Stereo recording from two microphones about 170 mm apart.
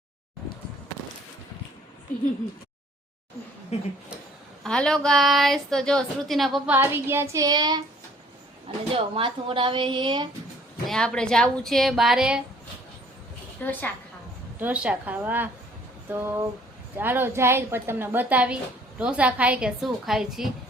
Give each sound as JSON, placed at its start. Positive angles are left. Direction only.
{"t": 3.7, "sound": "speech", "side_deg": 40}
{"t": 4.6, "sound": "a woman's voice", "side_deg": 5}
{"t": 6.7, "sound": "speech", "side_deg": -15}
{"t": 8.9, "sound": "speech", "side_deg": -30}
{"t": 10.8, "sound": "a woman's voice", "side_deg": 5}
{"t": 13.6, "sound": "a woman's voice", "side_deg": 10}
{"t": 14.6, "sound": "a woman's voice", "side_deg": -5}